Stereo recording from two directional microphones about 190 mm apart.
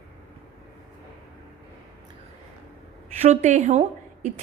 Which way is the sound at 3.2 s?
40° right (ahead or behind).